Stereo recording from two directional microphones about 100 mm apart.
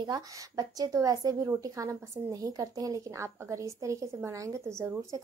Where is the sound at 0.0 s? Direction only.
40° right (ahead or behind).